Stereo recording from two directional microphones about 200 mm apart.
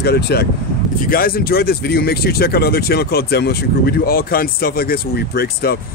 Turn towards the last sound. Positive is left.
turn(degrees=50)  # may be behind; listen again after turning